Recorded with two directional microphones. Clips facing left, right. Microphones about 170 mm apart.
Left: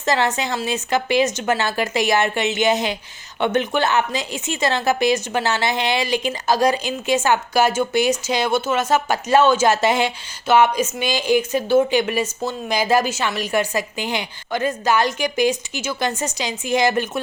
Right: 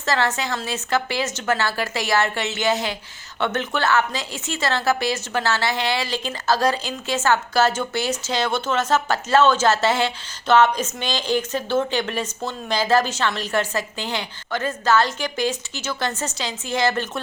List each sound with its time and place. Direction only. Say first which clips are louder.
0.0 s speech: left 2 dB; 20° left (ahead or behind)